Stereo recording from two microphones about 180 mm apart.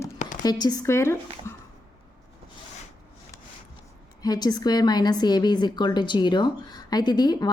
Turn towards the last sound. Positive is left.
turn(degrees=25)  # may be behind; listen again after turning